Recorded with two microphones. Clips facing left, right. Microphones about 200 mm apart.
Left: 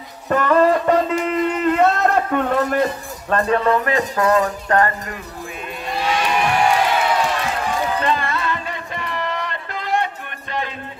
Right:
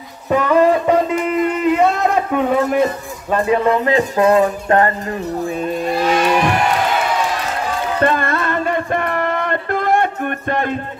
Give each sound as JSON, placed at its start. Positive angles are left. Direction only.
{"t": 0.3, "sound": "music", "side_deg": -10}
{"t": 5.9, "sound": "vehicle", "side_deg": -45}
{"t": 8.0, "sound": "music", "side_deg": -55}